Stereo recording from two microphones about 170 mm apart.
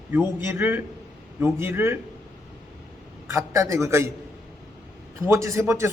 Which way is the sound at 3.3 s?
15° right (ahead or behind).